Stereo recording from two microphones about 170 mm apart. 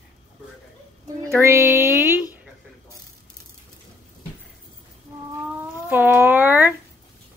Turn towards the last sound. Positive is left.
turn(degrees=-10)  # may be behind; listen again after turning